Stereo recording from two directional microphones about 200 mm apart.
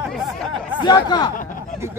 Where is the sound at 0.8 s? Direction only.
20° left (ahead or behind).